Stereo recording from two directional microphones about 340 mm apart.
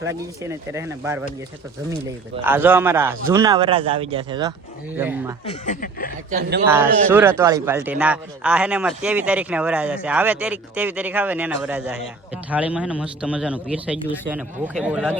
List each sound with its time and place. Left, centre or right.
0.1 s a man's voice: centre
2.4 s a man's voice: centre
5.5 s speech: left
6.3 s speech: right
7.1 s speech: centre